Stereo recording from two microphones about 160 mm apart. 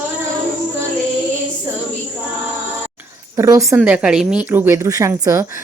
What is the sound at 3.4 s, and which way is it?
Speech, 20° right (ahead or behind).